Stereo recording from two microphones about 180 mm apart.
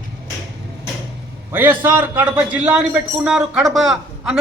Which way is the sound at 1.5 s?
10° right (ahead or behind).